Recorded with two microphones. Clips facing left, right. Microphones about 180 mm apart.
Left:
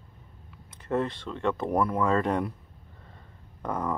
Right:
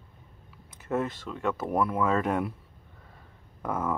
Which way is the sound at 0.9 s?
5° right (ahead or behind).